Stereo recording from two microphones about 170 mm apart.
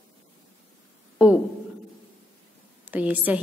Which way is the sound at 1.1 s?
5° right (ahead or behind).